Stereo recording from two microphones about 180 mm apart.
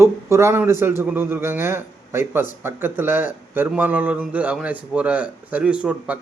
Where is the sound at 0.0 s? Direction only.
15° right (ahead or behind).